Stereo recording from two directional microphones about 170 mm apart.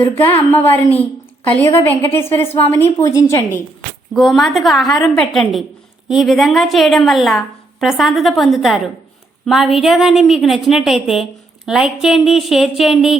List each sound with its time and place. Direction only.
0.0 s a woman's voice: 10° left (ahead or behind)
4.1 s a woman's voice: centre (ahead or behind)